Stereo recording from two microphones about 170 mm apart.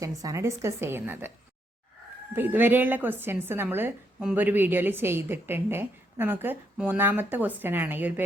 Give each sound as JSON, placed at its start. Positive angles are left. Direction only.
{"t": 0.0, "sound": "a woman's voice", "side_deg": -20}
{"t": 2.3, "sound": "a woman's voice", "side_deg": -10}